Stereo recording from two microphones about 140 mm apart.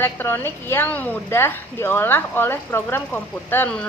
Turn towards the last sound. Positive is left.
turn(degrees=10)  # may be behind; listen again after turning